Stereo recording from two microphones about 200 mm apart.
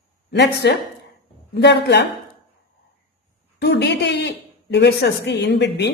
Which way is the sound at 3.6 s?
55° left (ahead or behind).